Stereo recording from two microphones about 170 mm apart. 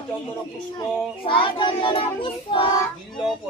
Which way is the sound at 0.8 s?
30° left (ahead or behind).